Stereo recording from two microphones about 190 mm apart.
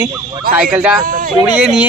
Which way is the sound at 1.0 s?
45° right (ahead or behind).